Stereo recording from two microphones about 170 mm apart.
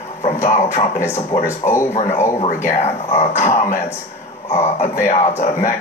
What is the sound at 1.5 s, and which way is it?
Speech, 15° left (ahead or behind).